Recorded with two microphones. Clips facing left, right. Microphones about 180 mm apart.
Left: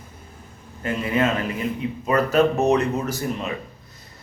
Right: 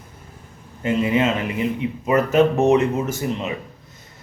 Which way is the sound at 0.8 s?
20° right (ahead or behind).